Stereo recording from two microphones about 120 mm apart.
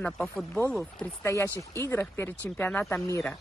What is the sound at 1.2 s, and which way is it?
Speech, 20° left (ahead or behind).